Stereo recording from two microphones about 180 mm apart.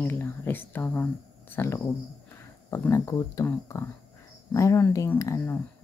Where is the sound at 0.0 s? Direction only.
10° left (ahead or behind).